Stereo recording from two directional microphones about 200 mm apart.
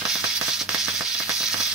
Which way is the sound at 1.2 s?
Centre (ahead or behind).